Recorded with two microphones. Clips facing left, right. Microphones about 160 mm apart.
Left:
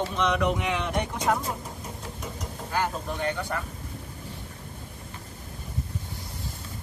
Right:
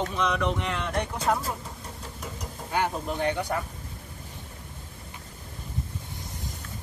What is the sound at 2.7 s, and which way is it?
Speech, 20° right (ahead or behind).